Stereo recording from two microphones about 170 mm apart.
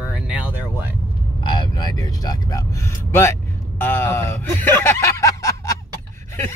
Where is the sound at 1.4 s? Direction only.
25° left (ahead or behind).